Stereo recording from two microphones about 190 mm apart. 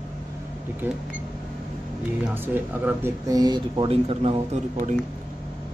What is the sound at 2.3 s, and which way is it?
Speech, 10° right (ahead or behind).